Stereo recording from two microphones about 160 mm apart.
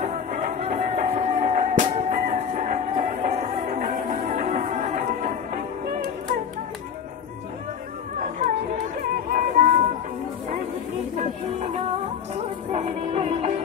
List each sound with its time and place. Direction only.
0.0 s music: 55° right (ahead or behind)
8.2 s chatter: 55° right (ahead or behind)
9.0 s music: 55° right (ahead or behind)
11.1 s music: 45° right (ahead or behind)